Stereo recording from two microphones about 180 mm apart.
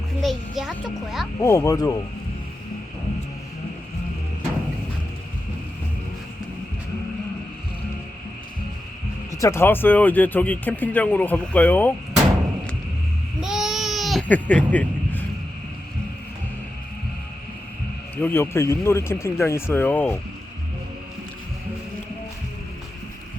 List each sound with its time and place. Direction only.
0.2 s a child's voice: centre (ahead or behind)
1.4 s speech: 15° left (ahead or behind)
9.3 s speech: 15° left (ahead or behind)
13.4 s goat: centre (ahead or behind)
18.2 s speech: 10° left (ahead or behind)